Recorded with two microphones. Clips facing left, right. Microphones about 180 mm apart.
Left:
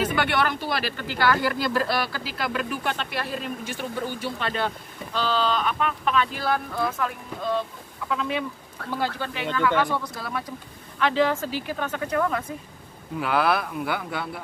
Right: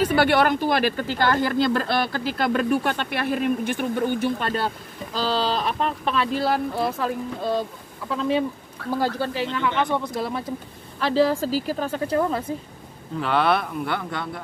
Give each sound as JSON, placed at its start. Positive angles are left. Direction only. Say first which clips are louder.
{"t": 0.1, "sound": "speech", "louder": "right 6 dB", "side_deg": -40}
{"t": 13.2, "sound": "speech", "louder": "right 2 dB", "side_deg": 5}